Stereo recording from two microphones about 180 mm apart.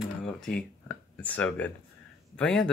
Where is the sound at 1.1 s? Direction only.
5° left (ahead or behind).